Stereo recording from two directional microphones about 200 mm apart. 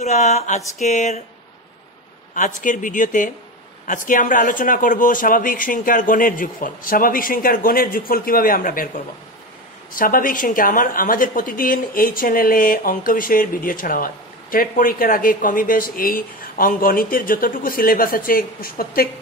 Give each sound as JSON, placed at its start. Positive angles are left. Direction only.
{"t": 0.0, "sound": "speech", "side_deg": 35}
{"t": 2.3, "sound": "a woman's voice", "side_deg": 40}